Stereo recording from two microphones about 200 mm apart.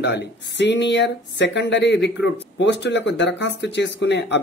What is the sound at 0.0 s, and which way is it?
Speech, 60° left (ahead or behind).